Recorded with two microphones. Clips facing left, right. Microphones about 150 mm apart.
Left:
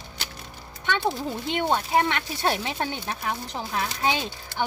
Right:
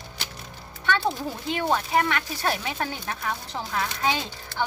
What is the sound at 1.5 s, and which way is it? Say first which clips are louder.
Speech: even; 25° left (ahead or behind).